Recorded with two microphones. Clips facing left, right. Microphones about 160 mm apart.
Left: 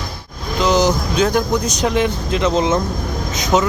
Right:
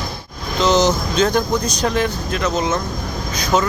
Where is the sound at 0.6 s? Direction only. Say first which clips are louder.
Even; 10° left (ahead or behind).